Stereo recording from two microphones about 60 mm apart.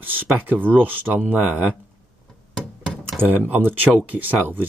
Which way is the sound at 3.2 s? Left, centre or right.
Right.